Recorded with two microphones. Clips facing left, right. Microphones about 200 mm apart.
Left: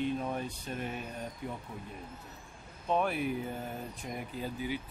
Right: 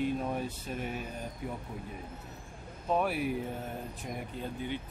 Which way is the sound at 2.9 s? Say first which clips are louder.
Right 1 dB; 5° right (ahead or behind).